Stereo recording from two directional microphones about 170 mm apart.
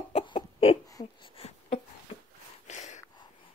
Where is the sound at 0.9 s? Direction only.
25° left (ahead or behind); by 3.0 s 45° left (ahead or behind).